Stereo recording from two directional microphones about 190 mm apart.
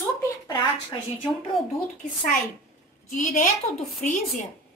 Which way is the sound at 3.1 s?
45° left (ahead or behind).